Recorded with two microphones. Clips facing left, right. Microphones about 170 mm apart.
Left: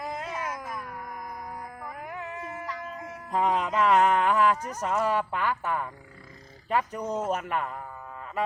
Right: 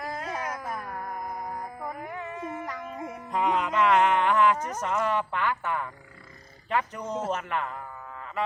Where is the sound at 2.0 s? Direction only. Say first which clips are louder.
Right 2 dB; 5° left (ahead or behind).